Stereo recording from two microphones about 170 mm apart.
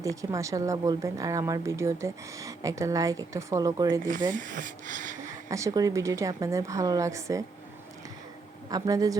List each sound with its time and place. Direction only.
0.0 s a woman's voice: 20° right (ahead or behind)
4.1 s speech: 50° right (ahead or behind)
5.5 s a woman's voice: 20° right (ahead or behind)
8.7 s a woman's voice: 20° right (ahead or behind)